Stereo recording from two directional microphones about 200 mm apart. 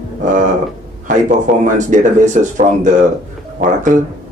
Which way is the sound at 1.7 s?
40° right (ahead or behind).